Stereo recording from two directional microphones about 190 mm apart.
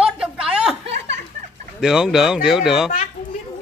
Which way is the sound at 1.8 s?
5° right (ahead or behind).